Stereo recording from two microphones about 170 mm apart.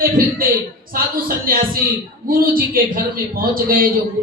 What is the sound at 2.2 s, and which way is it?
A man's voice, 55° right (ahead or behind).